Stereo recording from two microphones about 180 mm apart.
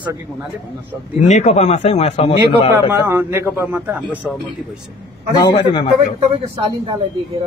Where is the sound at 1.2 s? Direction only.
40° left (ahead or behind).